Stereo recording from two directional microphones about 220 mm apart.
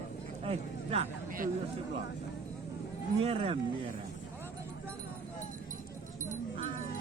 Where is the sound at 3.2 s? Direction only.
25° right (ahead or behind).